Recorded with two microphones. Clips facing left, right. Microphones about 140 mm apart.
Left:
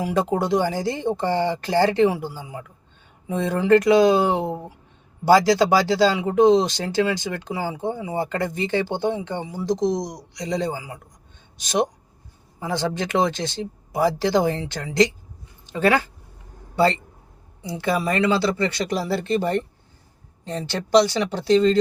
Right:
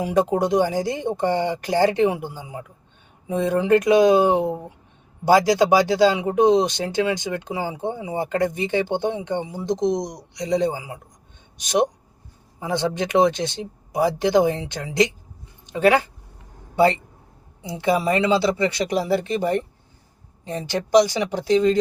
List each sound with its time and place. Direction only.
0.0 s speech: 15° right (ahead or behind)